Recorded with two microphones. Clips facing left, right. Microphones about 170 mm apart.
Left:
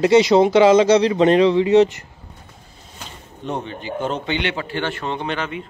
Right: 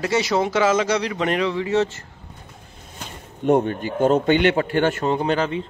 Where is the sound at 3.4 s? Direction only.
50° right (ahead or behind).